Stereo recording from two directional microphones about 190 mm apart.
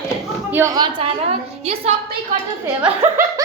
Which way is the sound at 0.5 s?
15° right (ahead or behind).